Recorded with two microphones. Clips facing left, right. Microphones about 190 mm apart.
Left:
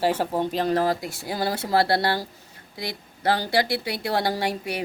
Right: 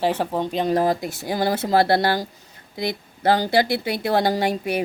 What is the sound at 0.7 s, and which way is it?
Speech, 20° right (ahead or behind).